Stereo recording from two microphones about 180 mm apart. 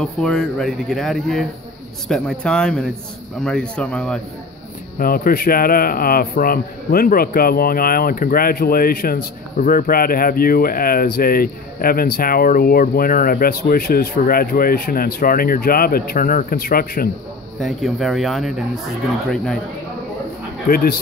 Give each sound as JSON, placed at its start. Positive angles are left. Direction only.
{"t": 0.0, "sound": "speech", "side_deg": 5}
{"t": 4.9, "sound": "a man's voice", "side_deg": 55}
{"t": 17.6, "sound": "speech", "side_deg": 0}
{"t": 20.6, "sound": "a man's voice", "side_deg": 55}